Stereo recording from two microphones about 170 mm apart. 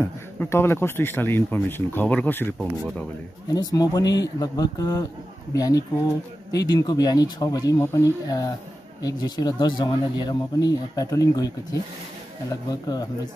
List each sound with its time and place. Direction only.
0.0 s speech: 15° left (ahead or behind)
3.5 s speech: 20° left (ahead or behind)